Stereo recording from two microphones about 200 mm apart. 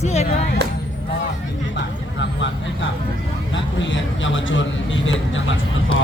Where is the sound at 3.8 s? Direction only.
70° left (ahead or behind).